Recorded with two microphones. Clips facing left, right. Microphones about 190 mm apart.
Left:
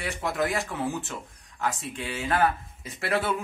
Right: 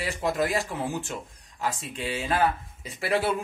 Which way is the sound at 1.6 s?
30° right (ahead or behind).